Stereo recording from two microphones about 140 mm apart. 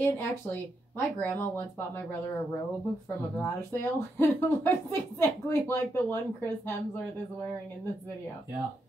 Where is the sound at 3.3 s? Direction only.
15° left (ahead or behind).